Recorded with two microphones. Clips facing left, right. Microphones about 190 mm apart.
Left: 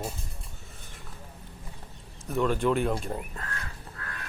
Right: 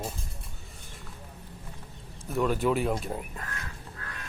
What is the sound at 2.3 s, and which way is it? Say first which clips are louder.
Speech: left 1 dB; 5° right (ahead or behind).